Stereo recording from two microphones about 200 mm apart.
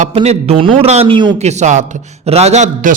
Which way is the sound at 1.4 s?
35° right (ahead or behind).